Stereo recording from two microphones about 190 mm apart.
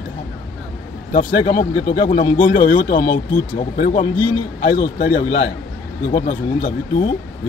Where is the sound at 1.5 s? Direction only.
45° left (ahead or behind).